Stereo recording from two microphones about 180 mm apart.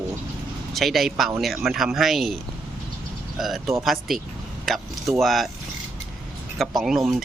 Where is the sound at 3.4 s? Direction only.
Centre (ahead or behind).